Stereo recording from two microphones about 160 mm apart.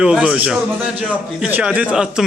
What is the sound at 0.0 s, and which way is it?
A man's voice, 5° right (ahead or behind).